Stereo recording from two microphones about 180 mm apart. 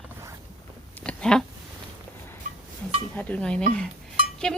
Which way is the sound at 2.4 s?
45° right (ahead or behind).